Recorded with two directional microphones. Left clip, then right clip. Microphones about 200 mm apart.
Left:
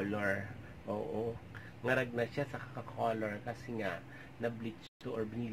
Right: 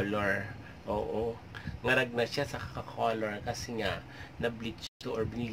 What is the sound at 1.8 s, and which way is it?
Speech, 5° right (ahead or behind).